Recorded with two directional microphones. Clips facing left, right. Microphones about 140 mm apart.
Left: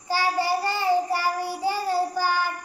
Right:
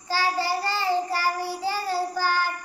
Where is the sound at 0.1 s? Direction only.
15° left (ahead or behind).